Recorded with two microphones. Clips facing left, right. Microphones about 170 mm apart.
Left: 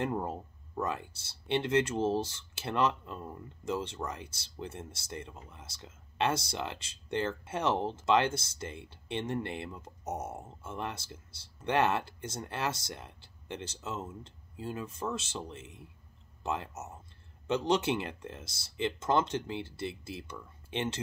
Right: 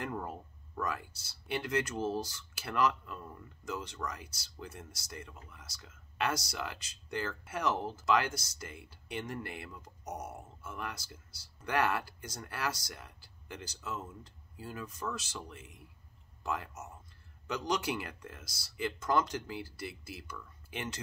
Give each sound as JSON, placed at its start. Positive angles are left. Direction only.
{"t": 0.0, "sound": "speech", "side_deg": 25}